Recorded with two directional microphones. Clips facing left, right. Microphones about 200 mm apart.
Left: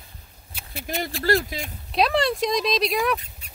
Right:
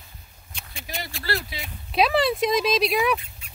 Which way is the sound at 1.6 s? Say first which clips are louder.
Even; centre (ahead or behind).